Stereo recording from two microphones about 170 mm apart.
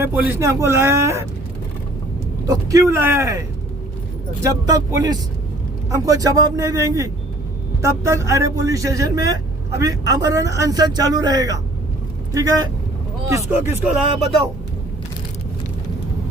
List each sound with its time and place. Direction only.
0.0 s speech: 10° right (ahead or behind)
2.5 s speech: 20° right (ahead or behind)
4.4 s speech: 20° right (ahead or behind)